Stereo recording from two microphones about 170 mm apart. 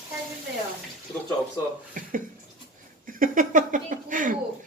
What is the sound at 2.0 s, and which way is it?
Speech, 50° right (ahead or behind).